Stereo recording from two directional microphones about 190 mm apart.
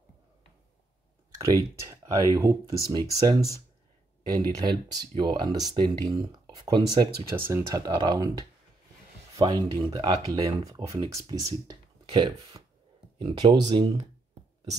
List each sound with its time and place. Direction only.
1.4 s speech: 15° right (ahead or behind)